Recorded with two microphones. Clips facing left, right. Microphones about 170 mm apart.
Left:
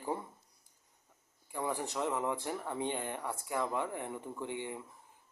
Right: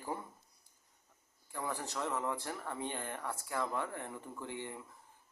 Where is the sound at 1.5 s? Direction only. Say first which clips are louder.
Left 4 dB; 15° left (ahead or behind).